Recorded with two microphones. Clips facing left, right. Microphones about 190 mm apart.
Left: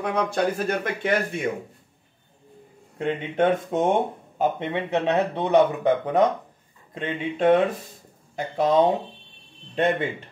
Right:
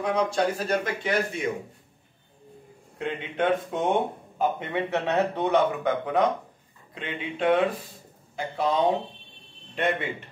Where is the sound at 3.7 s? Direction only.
45° left (ahead or behind).